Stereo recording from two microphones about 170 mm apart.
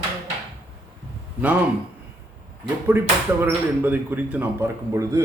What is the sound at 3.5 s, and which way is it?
A man's voice, 10° right (ahead or behind).